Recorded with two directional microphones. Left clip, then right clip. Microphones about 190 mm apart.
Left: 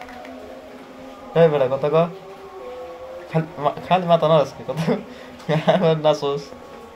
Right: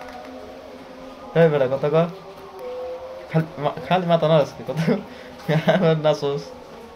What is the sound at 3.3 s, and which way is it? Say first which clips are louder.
Speech: left 2 dB; 20° right (ahead or behind).